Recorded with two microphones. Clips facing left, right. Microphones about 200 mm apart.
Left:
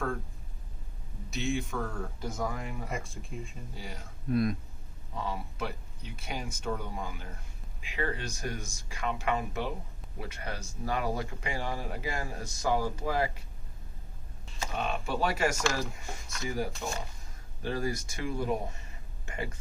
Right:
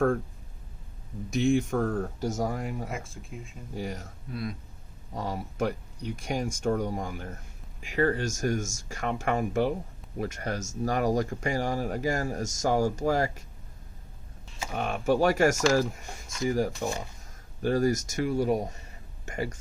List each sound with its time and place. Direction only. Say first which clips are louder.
1.4 s speech: right 8 dB; 50° right (ahead or behind)
2.9 s speech: even; centre (ahead or behind)
3.8 s speech: right 10 dB; 45° right (ahead or behind)
4.3 s speech: left 7 dB; 50° left (ahead or behind)
5.1 s speech: right 3 dB; 45° right (ahead or behind)
14.8 s speech: right 7 dB; 50° right (ahead or behind)